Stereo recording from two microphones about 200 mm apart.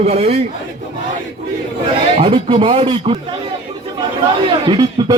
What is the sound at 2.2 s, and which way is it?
A man's voice, 30° right (ahead or behind).